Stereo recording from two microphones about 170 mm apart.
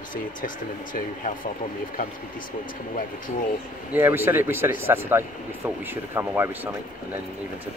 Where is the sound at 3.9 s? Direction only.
15° right (ahead or behind).